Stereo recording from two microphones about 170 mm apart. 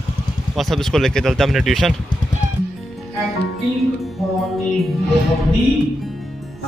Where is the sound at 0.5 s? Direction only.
Centre (ahead or behind).